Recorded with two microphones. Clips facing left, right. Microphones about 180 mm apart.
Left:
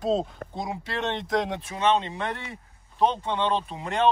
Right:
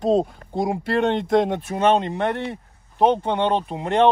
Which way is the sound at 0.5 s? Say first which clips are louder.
Right 10 dB; 55° right (ahead or behind).